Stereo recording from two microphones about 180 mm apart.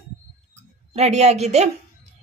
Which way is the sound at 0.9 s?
35° right (ahead or behind).